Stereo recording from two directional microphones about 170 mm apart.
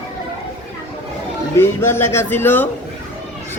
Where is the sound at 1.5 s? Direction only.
15° left (ahead or behind).